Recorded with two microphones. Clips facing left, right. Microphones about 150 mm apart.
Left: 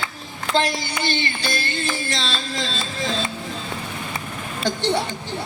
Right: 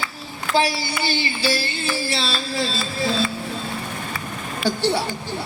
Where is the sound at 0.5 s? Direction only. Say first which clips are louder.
Right 1 dB; 20° left (ahead or behind).